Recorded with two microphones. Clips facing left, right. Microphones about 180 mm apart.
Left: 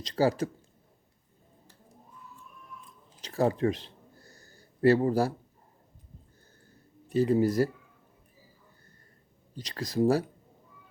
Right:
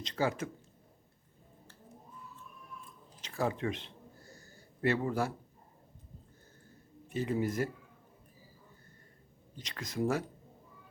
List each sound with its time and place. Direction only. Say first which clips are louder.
0.0 s speech: left 7 dB; 35° left (ahead or behind)
3.2 s a sound: left 7 dB; 35° left (ahead or behind)
7.1 s speech: left 9 dB; 35° left (ahead or behind)
9.6 s speech: left 7 dB; 35° left (ahead or behind)